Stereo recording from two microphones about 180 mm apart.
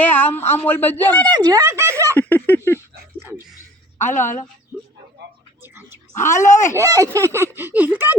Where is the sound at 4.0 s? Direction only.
40° left (ahead or behind).